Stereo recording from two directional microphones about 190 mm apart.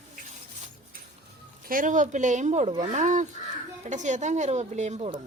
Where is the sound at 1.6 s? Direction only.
45° right (ahead or behind).